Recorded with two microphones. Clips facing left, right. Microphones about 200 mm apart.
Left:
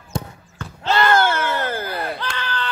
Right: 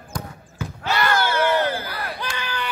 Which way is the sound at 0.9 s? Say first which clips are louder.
Left 3 dB; 50° left (ahead or behind).